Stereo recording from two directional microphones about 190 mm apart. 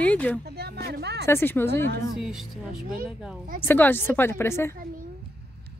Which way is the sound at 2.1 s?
5° right (ahead or behind).